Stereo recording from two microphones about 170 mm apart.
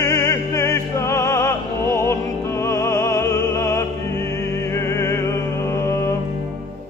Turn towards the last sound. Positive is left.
turn(degrees=15)  # may be behind; listen again after turning